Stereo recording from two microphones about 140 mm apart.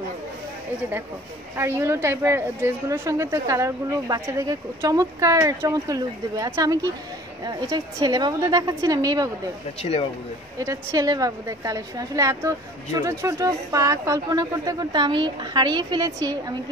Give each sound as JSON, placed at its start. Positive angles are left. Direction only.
{"t": 1.6, "sound": "a woman's voice", "side_deg": -20}
{"t": 9.8, "sound": "speech", "side_deg": 45}
{"t": 10.6, "sound": "a woman's voice", "side_deg": -25}